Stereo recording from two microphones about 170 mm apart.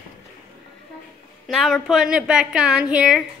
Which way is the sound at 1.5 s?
Centre (ahead or behind).